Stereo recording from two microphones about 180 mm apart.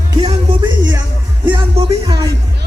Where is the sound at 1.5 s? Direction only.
30° right (ahead or behind).